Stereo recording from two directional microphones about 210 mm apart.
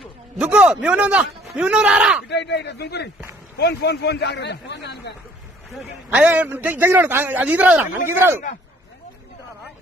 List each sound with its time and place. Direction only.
0.4 s a man's voice: 5° right (ahead or behind)
2.2 s a man's voice: 55° left (ahead or behind)
6.0 s a man's voice: 5° right (ahead or behind)